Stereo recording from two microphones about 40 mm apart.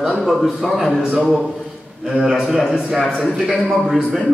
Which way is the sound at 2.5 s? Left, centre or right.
Centre.